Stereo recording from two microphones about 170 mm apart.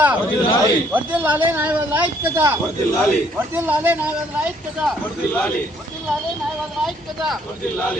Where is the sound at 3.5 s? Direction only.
10° right (ahead or behind).